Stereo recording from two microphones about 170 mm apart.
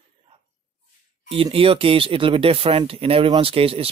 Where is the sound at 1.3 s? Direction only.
35° right (ahead or behind).